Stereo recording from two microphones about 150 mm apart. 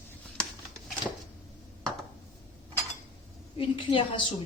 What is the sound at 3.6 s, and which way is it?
Speech, 35° left (ahead or behind).